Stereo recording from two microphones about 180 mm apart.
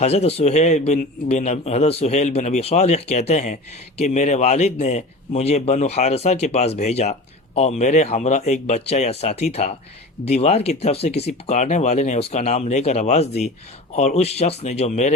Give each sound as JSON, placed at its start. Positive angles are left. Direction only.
{"t": 0.0, "sound": "a man's voice", "side_deg": 35}